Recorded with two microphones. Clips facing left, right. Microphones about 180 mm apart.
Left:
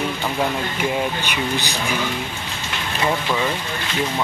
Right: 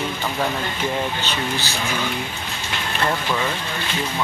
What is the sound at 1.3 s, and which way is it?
Speech, 15° left (ahead or behind).